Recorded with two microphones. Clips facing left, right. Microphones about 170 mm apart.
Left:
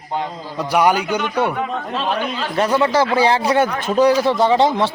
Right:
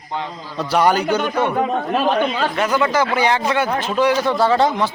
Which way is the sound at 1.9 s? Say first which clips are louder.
Right 4 dB; 55° right (ahead or behind).